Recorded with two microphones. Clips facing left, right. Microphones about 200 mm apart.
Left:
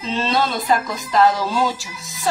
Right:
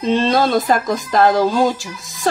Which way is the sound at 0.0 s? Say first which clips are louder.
Right 6 dB; 45° right (ahead or behind).